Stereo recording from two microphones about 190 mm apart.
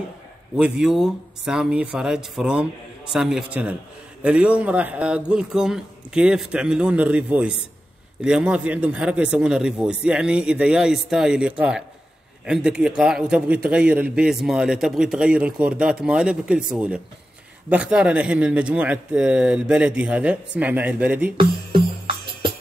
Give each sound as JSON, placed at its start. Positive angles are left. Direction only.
{"t": 0.6, "sound": "a man's voice", "side_deg": -5}
{"t": 21.4, "sound": "speech", "side_deg": -25}